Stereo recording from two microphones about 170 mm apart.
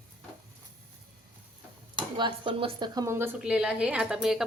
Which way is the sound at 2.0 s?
25° right (ahead or behind).